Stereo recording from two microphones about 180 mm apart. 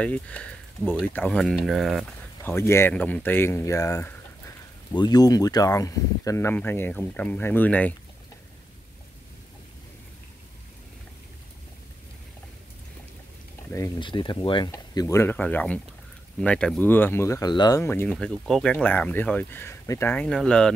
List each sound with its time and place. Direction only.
0.0 s speech: 5° left (ahead or behind)
2.4 s speech: 15° left (ahead or behind)
13.7 s speech: 15° left (ahead or behind)
18.1 s speech: 5° left (ahead or behind)